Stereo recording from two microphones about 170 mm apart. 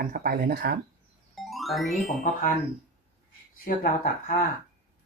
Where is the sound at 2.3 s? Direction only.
50° left (ahead or behind).